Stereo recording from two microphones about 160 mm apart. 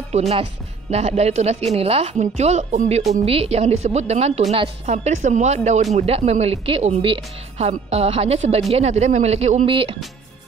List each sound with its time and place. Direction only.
0.3 s a woman's voice: 40° right (ahead or behind)
9.7 s speech: 35° right (ahead or behind)